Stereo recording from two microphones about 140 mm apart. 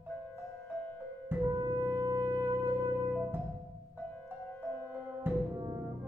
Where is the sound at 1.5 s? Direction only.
30° right (ahead or behind).